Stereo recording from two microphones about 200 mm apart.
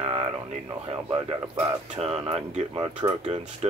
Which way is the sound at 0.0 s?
25° right (ahead or behind).